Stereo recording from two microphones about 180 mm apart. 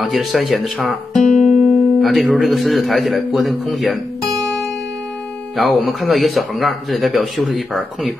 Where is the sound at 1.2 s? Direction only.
45° left (ahead or behind).